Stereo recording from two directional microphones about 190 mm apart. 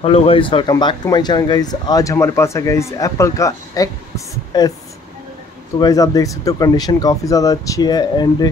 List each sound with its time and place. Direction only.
0.0 s speech: 30° left (ahead or behind)
5.8 s speech: 20° left (ahead or behind)